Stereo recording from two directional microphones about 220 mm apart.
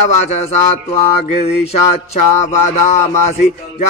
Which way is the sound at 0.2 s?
30° left (ahead or behind).